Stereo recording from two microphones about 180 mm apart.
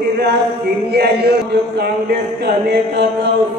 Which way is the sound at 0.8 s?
65° right (ahead or behind).